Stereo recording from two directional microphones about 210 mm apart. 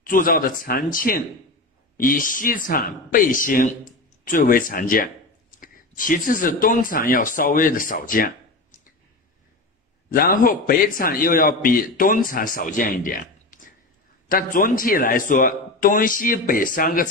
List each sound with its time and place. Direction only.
0.0 s a man's voice: 40° left (ahead or behind)
10.1 s a man's voice: 45° left (ahead or behind)